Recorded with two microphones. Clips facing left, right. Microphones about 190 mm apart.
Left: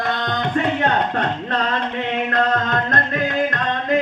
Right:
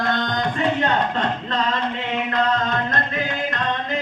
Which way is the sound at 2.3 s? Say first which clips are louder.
Left 1 dB; 50° left (ahead or behind).